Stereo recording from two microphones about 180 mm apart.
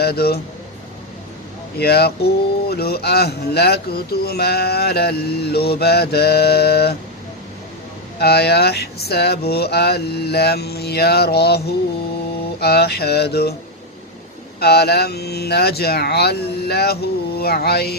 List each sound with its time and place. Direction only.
0.0 s speech: 60° left (ahead or behind)
1.8 s speech: 65° left (ahead or behind)
8.2 s speech: 65° left (ahead or behind)
14.6 s speech: 60° left (ahead or behind)